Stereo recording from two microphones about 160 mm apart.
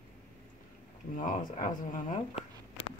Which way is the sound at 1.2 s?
55° left (ahead or behind).